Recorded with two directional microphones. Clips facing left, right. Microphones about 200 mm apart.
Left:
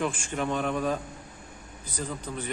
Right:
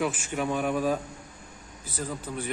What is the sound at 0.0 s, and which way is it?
Speech, 5° right (ahead or behind).